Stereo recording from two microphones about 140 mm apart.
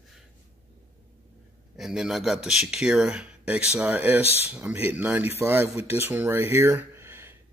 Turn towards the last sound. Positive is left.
turn(degrees=-15)  # may be behind; listen again after turning